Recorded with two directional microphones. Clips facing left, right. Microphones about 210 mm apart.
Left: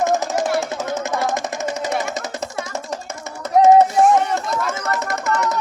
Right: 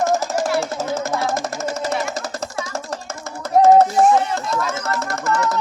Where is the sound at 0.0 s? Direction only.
20° left (ahead or behind).